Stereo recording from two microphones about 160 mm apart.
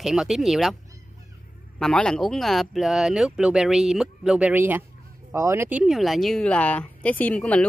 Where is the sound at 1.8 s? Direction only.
5° left (ahead or behind).